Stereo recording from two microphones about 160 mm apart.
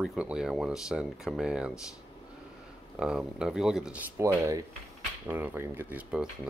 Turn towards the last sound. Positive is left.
turn(degrees=-10)  # may be behind; listen again after turning